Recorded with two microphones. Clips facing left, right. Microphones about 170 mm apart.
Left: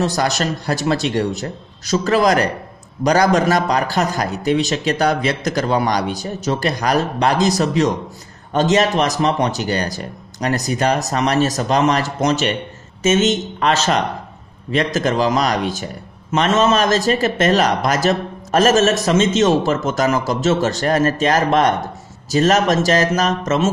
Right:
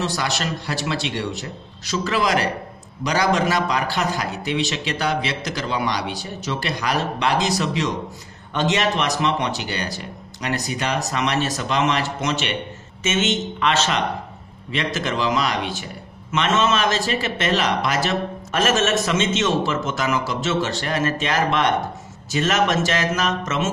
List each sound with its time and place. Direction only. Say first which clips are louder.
0.0 s a man's voice: left 6 dB; 40° left (ahead or behind)